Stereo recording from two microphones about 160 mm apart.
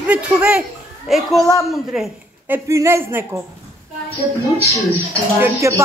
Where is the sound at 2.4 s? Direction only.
15° right (ahead or behind).